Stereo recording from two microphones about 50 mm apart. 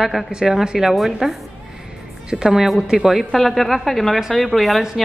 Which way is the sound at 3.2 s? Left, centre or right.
Centre.